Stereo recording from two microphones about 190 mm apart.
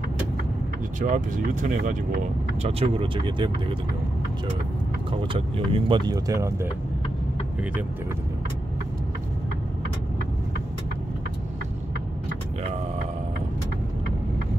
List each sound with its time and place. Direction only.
1.0 s speech: 45° right (ahead or behind)
2.6 s speech: 25° right (ahead or behind)
5.3 s speech: 25° right (ahead or behind)